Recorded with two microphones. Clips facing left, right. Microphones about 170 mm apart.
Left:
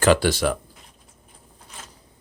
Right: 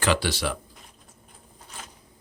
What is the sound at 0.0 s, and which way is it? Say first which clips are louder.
Speech: left 7 dB; 45° left (ahead or behind).